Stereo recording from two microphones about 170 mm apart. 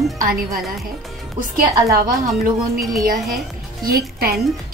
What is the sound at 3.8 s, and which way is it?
Speech, 60° right (ahead or behind).